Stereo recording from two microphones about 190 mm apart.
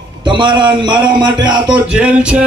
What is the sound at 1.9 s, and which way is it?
Speech, 5° right (ahead or behind).